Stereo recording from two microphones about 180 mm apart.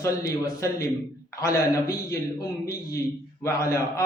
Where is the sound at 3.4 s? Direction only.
15° left (ahead or behind).